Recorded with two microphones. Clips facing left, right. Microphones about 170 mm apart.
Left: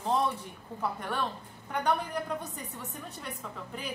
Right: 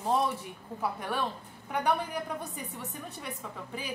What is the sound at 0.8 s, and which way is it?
A woman's voice, 5° right (ahead or behind).